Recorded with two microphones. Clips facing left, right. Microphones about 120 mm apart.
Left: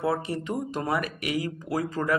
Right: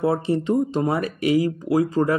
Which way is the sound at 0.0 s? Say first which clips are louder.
Right 6 dB; 25° right (ahead or behind).